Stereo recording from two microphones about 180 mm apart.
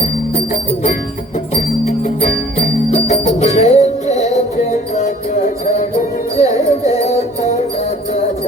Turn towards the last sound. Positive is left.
turn(degrees=40)  # may be behind; listen again after turning